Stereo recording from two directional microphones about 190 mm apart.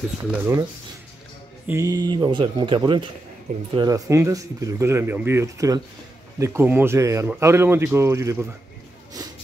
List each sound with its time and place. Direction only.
0.2 s speech: 10° right (ahead or behind)
1.7 s speech: 15° right (ahead or behind)